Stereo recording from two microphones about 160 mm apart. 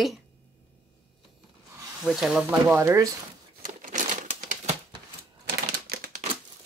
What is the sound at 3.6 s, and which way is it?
Crumpling, 55° right (ahead or behind).